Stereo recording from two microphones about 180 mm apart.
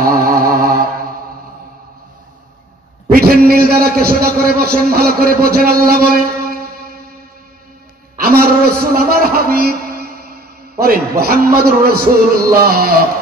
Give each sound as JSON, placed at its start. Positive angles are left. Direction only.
{"t": 0.0, "sound": "music", "side_deg": -55}
{"t": 3.1, "sound": "a man's voice", "side_deg": -55}
{"t": 8.2, "sound": "a man's voice", "side_deg": -60}